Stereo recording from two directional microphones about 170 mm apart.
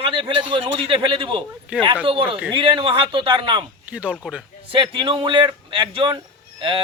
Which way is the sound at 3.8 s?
10° right (ahead or behind).